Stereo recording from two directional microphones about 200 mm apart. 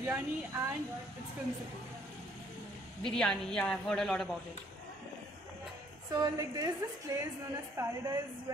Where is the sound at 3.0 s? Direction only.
5° left (ahead or behind).